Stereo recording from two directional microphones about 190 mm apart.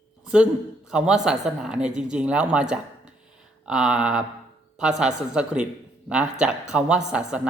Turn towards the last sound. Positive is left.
turn(degrees=-5)  # may be behind; listen again after turning